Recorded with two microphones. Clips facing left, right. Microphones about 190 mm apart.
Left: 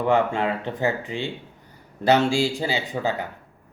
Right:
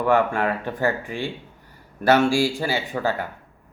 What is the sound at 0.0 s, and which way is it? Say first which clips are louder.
Speech: right 1 dB; 20° left (ahead or behind).